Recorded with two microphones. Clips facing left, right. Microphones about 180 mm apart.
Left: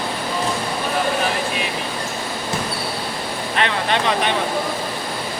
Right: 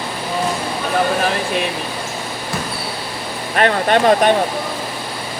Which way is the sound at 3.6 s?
50° right (ahead or behind).